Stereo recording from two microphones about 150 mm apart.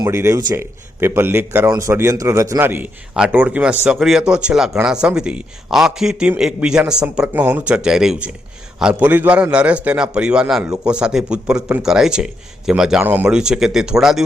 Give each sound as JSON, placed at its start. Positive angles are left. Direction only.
{"t": 0.0, "sound": "a man's voice", "side_deg": -20}